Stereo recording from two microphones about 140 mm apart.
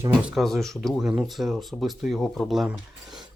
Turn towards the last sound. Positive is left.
turn(degrees=0)  # may be behind; listen again after turning